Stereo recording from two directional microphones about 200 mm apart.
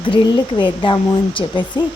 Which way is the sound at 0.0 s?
25° left (ahead or behind).